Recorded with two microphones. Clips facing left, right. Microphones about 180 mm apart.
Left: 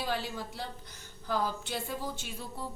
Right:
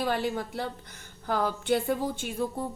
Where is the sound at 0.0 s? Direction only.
55° right (ahead or behind).